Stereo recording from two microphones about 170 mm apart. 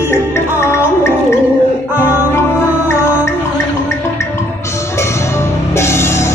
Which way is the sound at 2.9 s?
15° left (ahead or behind).